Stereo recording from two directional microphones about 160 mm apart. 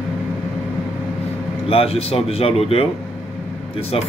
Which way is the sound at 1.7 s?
40° left (ahead or behind).